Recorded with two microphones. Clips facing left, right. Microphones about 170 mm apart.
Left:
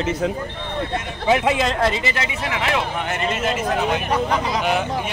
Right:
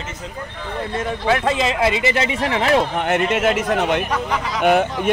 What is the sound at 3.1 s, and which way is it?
Speech, 65° right (ahead or behind).